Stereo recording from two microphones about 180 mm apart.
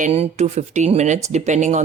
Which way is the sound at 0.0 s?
35° right (ahead or behind).